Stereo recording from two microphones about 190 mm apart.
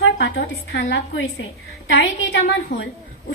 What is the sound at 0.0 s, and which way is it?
A woman's voice, 65° left (ahead or behind).